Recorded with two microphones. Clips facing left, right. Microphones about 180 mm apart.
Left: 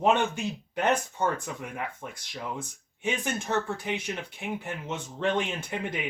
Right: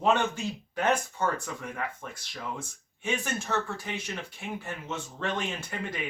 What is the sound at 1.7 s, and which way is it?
Speech, 20° left (ahead or behind).